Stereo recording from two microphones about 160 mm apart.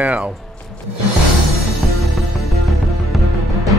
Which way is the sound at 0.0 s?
5° right (ahead or behind).